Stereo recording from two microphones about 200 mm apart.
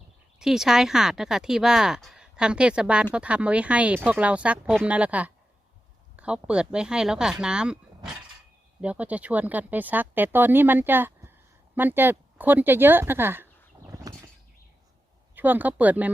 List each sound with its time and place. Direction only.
0.3 s speech: 5° right (ahead or behind)
13.9 s bird flight: 15° right (ahead or behind)
15.4 s speech: 10° right (ahead or behind)